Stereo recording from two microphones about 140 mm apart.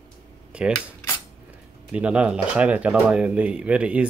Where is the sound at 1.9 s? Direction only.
10° right (ahead or behind).